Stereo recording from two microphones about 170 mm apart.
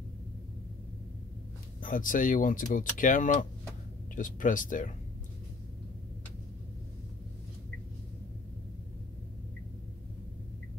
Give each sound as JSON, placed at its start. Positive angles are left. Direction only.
{"t": 1.8, "sound": "speech", "side_deg": 50}